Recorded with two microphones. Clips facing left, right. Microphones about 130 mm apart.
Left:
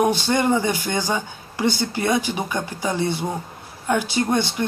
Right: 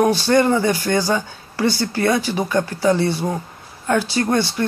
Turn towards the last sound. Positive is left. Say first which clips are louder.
# right 2 dB
turn(degrees=20)  # may be behind; listen again after turning